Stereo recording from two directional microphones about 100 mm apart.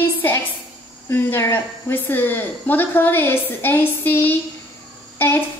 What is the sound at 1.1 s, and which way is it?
Speech, 20° left (ahead or behind).